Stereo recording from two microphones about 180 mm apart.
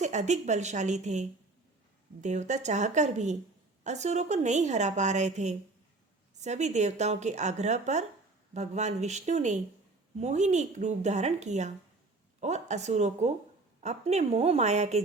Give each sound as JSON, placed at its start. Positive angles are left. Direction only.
{"t": 0.0, "sound": "a woman's voice", "side_deg": -40}